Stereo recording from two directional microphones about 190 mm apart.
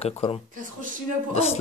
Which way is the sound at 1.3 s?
35° left (ahead or behind).